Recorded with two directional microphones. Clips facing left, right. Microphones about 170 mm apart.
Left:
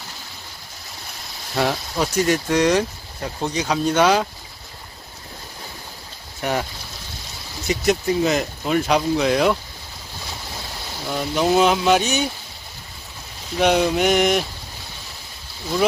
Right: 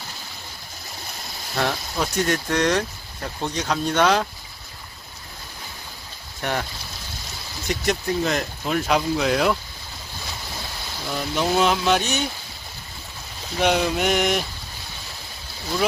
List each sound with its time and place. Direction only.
1.5 s speech: 5° left (ahead or behind)
6.4 s speech: 5° left (ahead or behind)
7.7 s speech: 5° left (ahead or behind)
11.2 s speech: 5° left (ahead or behind)
13.6 s speech: centre (ahead or behind)